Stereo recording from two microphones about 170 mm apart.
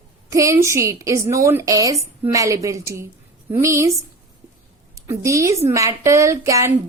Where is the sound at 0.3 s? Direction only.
20° right (ahead or behind).